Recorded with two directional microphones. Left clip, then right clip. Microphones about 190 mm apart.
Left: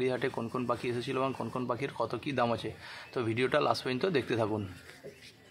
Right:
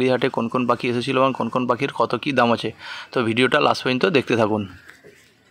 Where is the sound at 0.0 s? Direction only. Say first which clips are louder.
Right 12 dB; 35° right (ahead or behind).